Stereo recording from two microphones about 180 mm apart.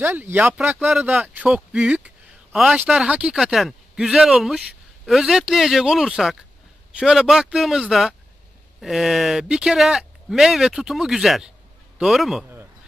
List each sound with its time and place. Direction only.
0.0 s speech: 10° right (ahead or behind)